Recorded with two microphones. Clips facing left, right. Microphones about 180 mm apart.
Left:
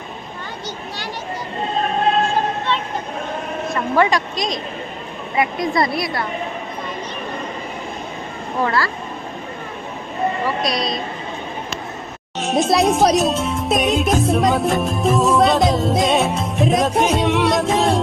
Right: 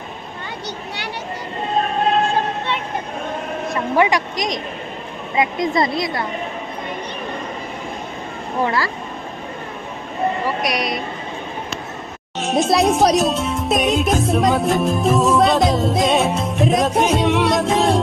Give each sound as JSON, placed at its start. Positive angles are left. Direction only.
{"t": 3.7, "sound": "a woman's voice", "side_deg": -15}
{"t": 8.6, "sound": "a woman's voice", "side_deg": -15}
{"t": 10.6, "sound": "a woman's voice", "side_deg": -15}
{"t": 12.4, "sound": "speech", "side_deg": 0}